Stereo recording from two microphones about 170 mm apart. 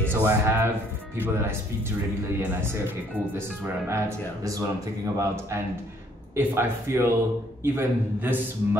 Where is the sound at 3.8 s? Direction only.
15° right (ahead or behind).